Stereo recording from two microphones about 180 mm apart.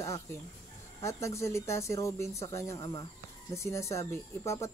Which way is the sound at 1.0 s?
15° left (ahead or behind).